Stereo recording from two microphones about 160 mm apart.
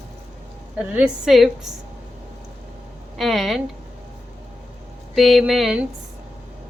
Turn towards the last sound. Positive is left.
turn(degrees=0)  # may be behind; listen again after turning